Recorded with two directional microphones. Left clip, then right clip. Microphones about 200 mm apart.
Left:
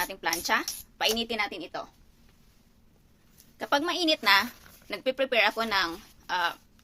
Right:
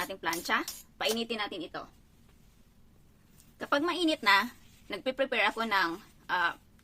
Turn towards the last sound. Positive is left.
turn(degrees=-30)  # may be behind; listen again after turning